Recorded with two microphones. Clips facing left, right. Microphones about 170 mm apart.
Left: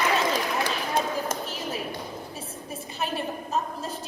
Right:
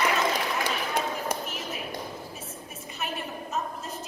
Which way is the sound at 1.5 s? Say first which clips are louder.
Left 3 dB; 30° left (ahead or behind).